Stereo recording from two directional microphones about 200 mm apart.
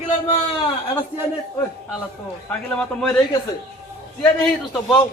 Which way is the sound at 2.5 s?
5° left (ahead or behind).